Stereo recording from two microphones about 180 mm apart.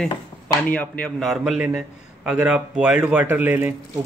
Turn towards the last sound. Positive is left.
turn(degrees=-10)  # may be behind; listen again after turning